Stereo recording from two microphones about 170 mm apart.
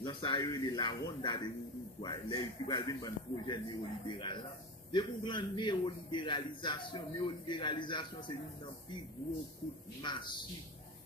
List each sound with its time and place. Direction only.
0.0 s a man's voice: 25° left (ahead or behind)
10.0 s a man's voice: 25° left (ahead or behind)